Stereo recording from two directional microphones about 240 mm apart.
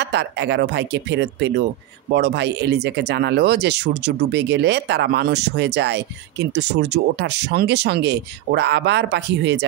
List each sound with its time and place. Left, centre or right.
0.0 s speech: right